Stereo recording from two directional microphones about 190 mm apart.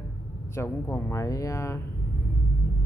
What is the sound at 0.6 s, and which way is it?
Speech, 15° left (ahead or behind).